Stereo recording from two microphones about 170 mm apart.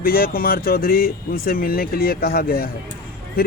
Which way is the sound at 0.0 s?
60° left (ahead or behind).